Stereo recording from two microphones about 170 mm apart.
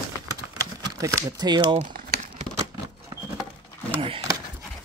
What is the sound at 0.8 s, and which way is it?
Speech, 20° right (ahead or behind).